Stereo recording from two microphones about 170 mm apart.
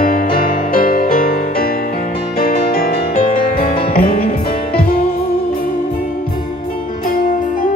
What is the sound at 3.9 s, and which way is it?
Music, 60° left (ahead or behind).